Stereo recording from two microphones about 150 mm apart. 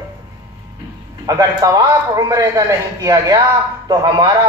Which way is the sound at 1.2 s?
25° right (ahead or behind).